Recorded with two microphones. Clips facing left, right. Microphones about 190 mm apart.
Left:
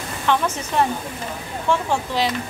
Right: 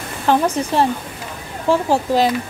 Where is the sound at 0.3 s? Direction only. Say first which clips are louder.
Right 5 dB; 35° right (ahead or behind).